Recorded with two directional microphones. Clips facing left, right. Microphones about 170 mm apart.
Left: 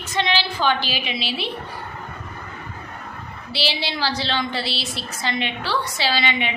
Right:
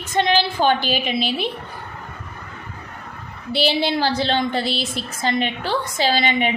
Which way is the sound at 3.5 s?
50° right (ahead or behind).